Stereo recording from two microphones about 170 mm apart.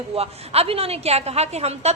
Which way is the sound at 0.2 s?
35° right (ahead or behind).